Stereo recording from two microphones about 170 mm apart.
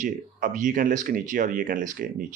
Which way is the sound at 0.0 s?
50° right (ahead or behind).